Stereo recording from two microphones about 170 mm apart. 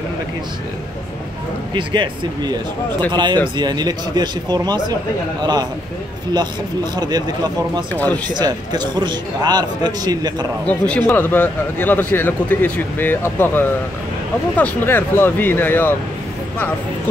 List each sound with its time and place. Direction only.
1.7 s a man's voice: 30° right (ahead or behind)
7.9 s a man's voice: 10° left (ahead or behind)
8.4 s a man's voice: 25° right (ahead or behind)
10.7 s a man's voice: 10° left (ahead or behind)